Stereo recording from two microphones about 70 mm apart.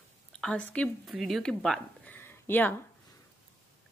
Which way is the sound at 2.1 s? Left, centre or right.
Left.